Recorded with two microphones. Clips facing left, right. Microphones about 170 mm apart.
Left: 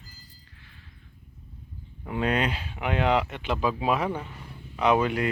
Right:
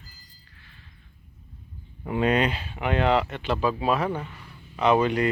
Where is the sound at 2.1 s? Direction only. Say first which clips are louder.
Right 3 dB; 5° right (ahead or behind).